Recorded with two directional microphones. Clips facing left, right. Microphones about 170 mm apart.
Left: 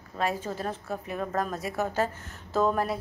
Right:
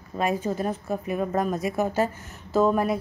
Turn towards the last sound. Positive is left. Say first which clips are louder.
# right 4 dB
turn(degrees=-10)  # may be behind; listen again after turning